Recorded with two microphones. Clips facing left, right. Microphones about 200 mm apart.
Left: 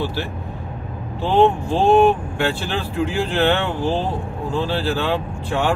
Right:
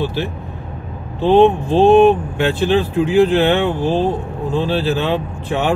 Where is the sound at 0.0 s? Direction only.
20° right (ahead or behind).